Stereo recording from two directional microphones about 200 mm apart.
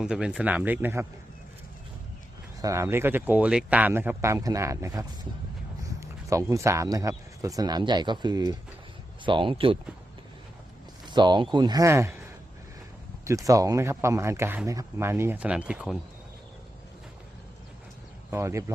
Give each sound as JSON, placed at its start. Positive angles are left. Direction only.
{"t": 0.0, "sound": "speech", "side_deg": -5}
{"t": 2.6, "sound": "speech", "side_deg": -15}
{"t": 11.0, "sound": "a sound", "side_deg": -20}
{"t": 11.5, "sound": "speech", "side_deg": -20}
{"t": 13.2, "sound": "speech", "side_deg": -15}
{"t": 18.3, "sound": "speech", "side_deg": -15}